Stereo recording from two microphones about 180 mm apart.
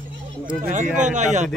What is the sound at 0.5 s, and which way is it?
Speech, 45° right (ahead or behind).